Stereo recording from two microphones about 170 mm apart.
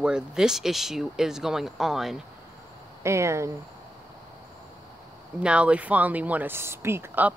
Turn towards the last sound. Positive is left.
turn(degrees=-15)  # may be behind; listen again after turning